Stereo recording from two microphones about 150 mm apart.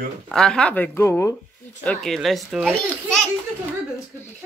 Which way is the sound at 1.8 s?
Centre (ahead or behind).